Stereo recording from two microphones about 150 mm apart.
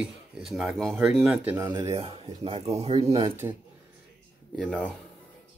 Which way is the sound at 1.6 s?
25° right (ahead or behind).